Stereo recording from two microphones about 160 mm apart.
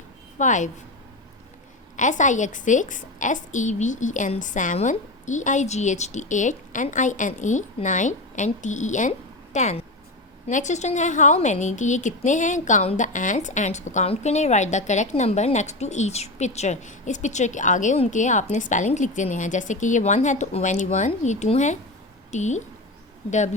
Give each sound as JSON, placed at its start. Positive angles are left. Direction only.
{"t": 0.3, "sound": "a woman's voice", "side_deg": 50}
{"t": 2.0, "sound": "a woman's voice", "side_deg": 50}